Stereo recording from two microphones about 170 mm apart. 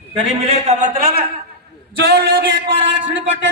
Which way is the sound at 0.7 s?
40° right (ahead or behind).